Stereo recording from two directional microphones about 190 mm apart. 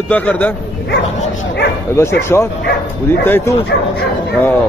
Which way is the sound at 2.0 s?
15° left (ahead or behind).